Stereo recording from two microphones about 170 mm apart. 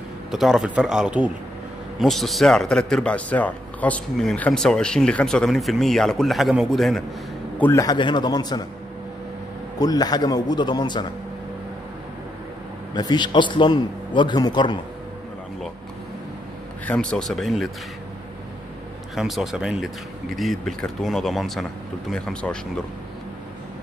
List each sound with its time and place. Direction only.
0.3 s a man's voice: centre (ahead or behind)
7.8 s a man's voice: 25° left (ahead or behind)
9.8 s a man's voice: 20° left (ahead or behind)
12.9 s a man's voice: 25° left (ahead or behind)
16.8 s a man's voice: 5° left (ahead or behind)
19.1 s a man's voice: centre (ahead or behind)